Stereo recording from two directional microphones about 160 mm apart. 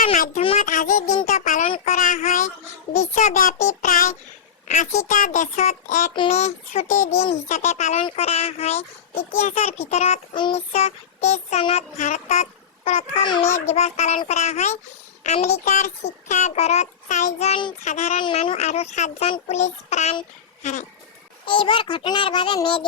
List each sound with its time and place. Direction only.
0.0 s a sound: 50° left (ahead or behind)
1.3 s child singing: 50° left (ahead or behind)
1.7 s child singing: 40° left (ahead or behind)
2.0 s a sound: 55° left (ahead or behind)
3.2 s a child's voice: 55° left (ahead or behind)
8.0 s child singing: 40° left (ahead or behind)
10.3 s child singing: 30° left (ahead or behind)
10.7 s child singing: 40° left (ahead or behind)
13.5 s a child's voice: 40° left (ahead or behind)
18.2 s child singing: 30° left (ahead or behind)
18.5 s a child's voice: 45° left (ahead or behind)
21.4 s child singing: 30° left (ahead or behind)